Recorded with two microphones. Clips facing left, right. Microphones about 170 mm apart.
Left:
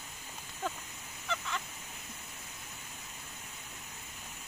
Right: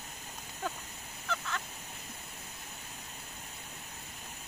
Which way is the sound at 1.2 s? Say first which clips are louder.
Even; centre (ahead or behind).